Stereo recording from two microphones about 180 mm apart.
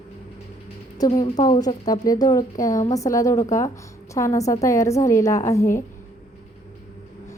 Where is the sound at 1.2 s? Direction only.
35° left (ahead or behind).